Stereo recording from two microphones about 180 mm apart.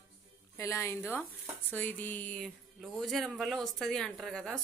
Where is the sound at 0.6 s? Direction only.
15° left (ahead or behind).